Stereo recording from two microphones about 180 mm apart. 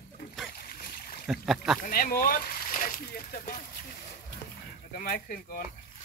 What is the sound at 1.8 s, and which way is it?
Speech, 50° left (ahead or behind).